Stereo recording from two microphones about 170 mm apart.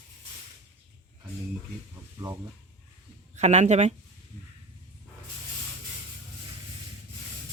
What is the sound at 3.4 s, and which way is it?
Speech, 40° right (ahead or behind).